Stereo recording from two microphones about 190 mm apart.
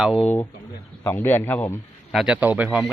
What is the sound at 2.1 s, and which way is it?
Speech, 5° right (ahead or behind).